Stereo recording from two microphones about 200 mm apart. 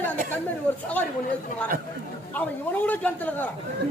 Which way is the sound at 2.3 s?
10° left (ahead or behind).